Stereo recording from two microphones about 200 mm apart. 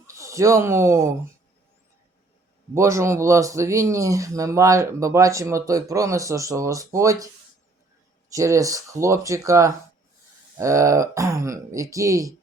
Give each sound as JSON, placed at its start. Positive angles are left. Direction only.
{"t": 0.1, "sound": "speech", "side_deg": -15}
{"t": 2.7, "sound": "speech", "side_deg": -15}
{"t": 8.3, "sound": "speech", "side_deg": -15}